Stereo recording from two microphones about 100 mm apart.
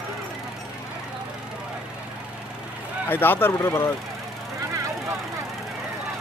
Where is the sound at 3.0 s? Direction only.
20° left (ahead or behind).